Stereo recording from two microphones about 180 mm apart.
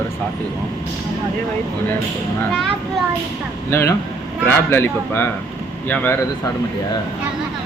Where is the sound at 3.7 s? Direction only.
15° left (ahead or behind).